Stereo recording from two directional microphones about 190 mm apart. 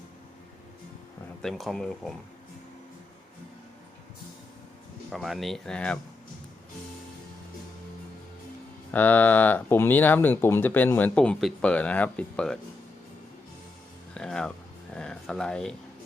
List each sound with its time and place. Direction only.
1.4 s speech: centre (ahead or behind)
5.1 s speech: centre (ahead or behind)
8.9 s speech: 10° left (ahead or behind)
14.1 s music: 5° left (ahead or behind)
14.9 s a sound: 5° left (ahead or behind)